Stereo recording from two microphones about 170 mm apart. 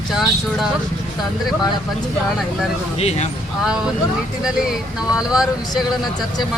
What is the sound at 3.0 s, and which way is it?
Speech, 40° left (ahead or behind).